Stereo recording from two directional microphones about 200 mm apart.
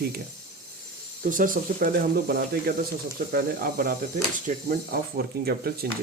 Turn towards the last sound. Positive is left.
turn(degrees=-50)  # may be behind; listen again after turning